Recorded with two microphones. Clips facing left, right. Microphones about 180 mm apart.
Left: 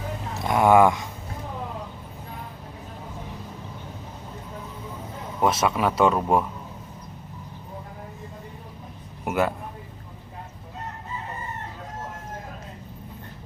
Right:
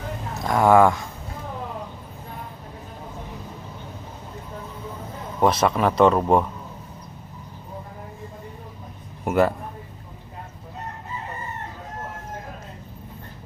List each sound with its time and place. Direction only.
0.5 s speech: 20° left (ahead or behind)
5.4 s speech: centre (ahead or behind)
9.2 s a man's voice: centre (ahead or behind)